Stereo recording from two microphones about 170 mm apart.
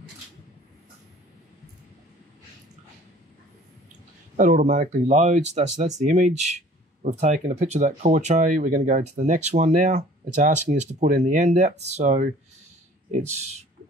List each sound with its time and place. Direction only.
4.4 s speech: 50° right (ahead or behind)